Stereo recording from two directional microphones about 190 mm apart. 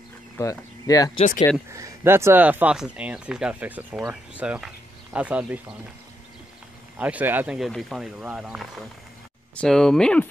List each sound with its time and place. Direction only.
0.4 s speech: 20° left (ahead or behind)
1.7 s speech: 15° right (ahead or behind)
7.0 s speech: 10° right (ahead or behind)